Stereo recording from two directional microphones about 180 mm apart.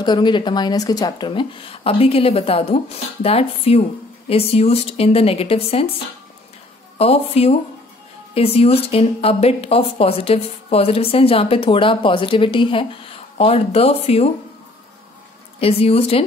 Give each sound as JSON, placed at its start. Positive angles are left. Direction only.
{"t": 0.0, "sound": "speech", "side_deg": 25}
{"t": 7.0, "sound": "speech", "side_deg": 35}
{"t": 15.6, "sound": "speech", "side_deg": 35}